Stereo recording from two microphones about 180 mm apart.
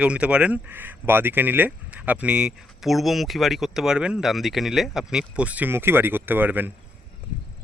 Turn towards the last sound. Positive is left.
turn(degrees=-10)  # may be behind; listen again after turning